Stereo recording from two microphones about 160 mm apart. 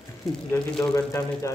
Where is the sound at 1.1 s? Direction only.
20° left (ahead or behind).